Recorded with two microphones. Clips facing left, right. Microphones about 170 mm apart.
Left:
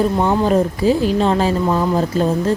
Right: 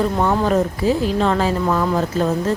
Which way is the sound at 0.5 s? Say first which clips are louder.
Left 2 dB; 25° left (ahead or behind).